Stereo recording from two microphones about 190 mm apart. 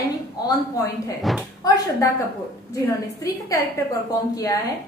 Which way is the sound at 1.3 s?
Centre (ahead or behind).